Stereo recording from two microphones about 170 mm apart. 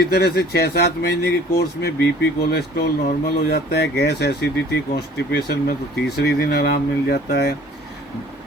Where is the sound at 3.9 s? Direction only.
75° left (ahead or behind).